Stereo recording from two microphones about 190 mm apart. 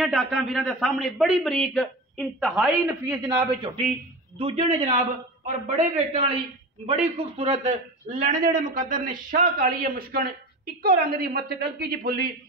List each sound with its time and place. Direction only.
0.0 s a man's voice: centre (ahead or behind)
3.3 s a man's voice: 25° right (ahead or behind); by 12.3 s 55° right (ahead or behind)